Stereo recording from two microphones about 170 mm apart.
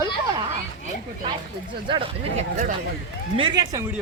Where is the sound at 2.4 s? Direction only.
45° right (ahead or behind).